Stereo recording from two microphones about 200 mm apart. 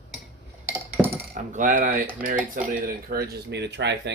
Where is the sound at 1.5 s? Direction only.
45° right (ahead or behind).